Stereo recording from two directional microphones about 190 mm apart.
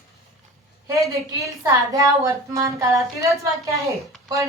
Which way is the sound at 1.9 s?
20° right (ahead or behind).